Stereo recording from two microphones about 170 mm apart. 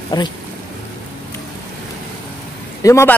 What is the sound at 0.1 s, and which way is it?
Speech, 25° left (ahead or behind).